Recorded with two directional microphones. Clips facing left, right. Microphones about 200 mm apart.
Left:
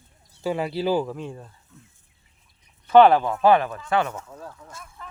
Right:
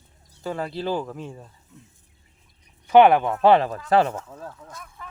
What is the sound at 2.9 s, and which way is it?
Speech, 15° right (ahead or behind).